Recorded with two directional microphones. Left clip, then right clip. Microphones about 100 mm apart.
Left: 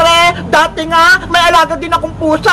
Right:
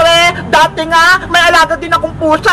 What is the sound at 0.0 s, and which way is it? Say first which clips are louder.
Speech: even; 20° left (ahead or behind).